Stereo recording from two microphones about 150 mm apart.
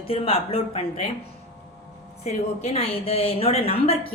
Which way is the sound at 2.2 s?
45° left (ahead or behind).